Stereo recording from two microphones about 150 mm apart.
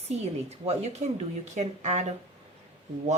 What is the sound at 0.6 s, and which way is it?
Speech, 45° right (ahead or behind).